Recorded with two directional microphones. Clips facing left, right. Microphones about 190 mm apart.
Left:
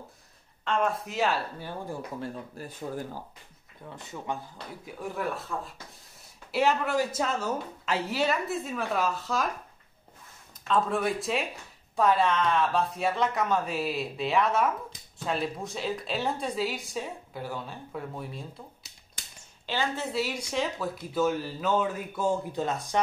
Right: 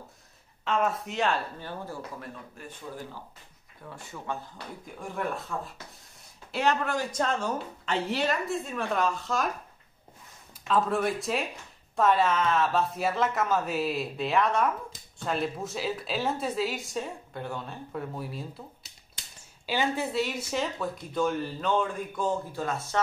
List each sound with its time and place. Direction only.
0.7 s a woman's voice: 5° right (ahead or behind)
2.1 s speech: 35° left (ahead or behind)
3.9 s speech: 20° left (ahead or behind)
5.5 s a woman's voice: 5° left (ahead or behind)
10.7 s a woman's voice: centre (ahead or behind)
19.6 s a woman's voice: 15° right (ahead or behind)
20.1 s a woman's voice: centre (ahead or behind)
22.5 s speech: 20° left (ahead or behind)